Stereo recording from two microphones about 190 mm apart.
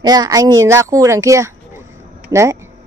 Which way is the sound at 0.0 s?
20° right (ahead or behind).